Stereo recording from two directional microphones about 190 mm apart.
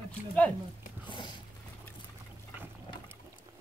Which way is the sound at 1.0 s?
25° left (ahead or behind).